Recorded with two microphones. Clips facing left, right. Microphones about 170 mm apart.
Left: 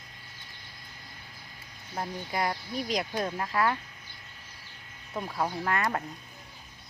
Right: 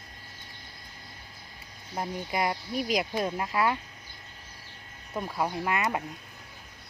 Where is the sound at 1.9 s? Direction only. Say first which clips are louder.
Right 2 dB; 15° right (ahead or behind).